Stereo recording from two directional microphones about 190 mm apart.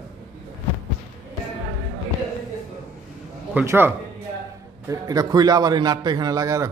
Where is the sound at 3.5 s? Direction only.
10° right (ahead or behind).